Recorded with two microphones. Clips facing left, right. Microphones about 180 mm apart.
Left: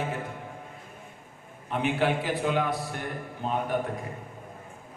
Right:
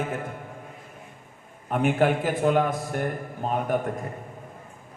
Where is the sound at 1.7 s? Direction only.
45° right (ahead or behind).